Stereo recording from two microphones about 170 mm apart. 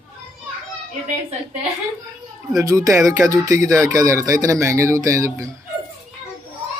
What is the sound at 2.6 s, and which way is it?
Speech, 20° right (ahead or behind).